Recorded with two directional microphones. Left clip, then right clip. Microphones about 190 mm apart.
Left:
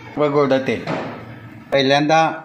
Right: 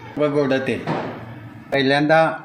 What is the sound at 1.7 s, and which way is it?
Speech, 10° left (ahead or behind).